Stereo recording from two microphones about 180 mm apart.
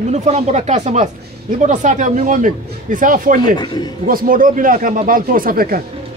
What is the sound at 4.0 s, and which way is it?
Speech, 50° right (ahead or behind).